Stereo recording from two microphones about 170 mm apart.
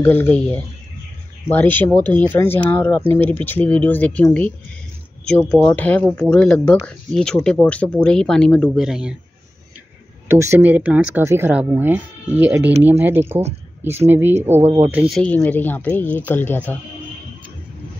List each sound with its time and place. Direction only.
0.0 s speech: 10° left (ahead or behind)
10.2 s speech: 15° right (ahead or behind)
13.3 s speech: 40° right (ahead or behind)
13.8 s speech: 15° right (ahead or behind); by 16.7 s 10° left (ahead or behind)